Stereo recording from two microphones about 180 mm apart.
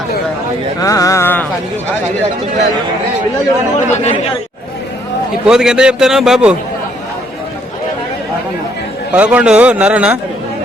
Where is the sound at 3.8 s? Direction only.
40° left (ahead or behind).